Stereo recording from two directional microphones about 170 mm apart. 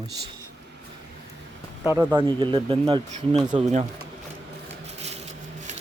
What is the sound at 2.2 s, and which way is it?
Speech, 30° right (ahead or behind).